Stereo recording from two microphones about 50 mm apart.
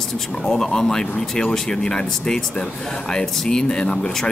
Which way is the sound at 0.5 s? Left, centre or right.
Centre.